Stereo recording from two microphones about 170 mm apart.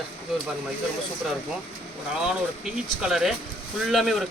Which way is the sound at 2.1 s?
5° right (ahead or behind).